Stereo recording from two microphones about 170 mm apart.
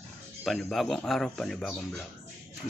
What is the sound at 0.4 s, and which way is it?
Speech, centre (ahead or behind).